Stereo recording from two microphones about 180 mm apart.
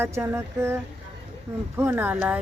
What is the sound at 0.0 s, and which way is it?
Speech, 15° right (ahead or behind).